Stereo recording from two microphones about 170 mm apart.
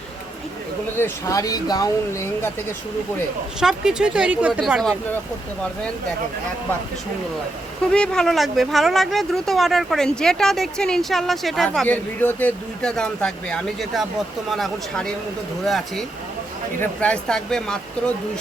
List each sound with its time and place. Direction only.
0.9 s speech: 15° left (ahead or behind)
3.6 s speech: 5° right (ahead or behind)
7.9 s speech: 5° left (ahead or behind)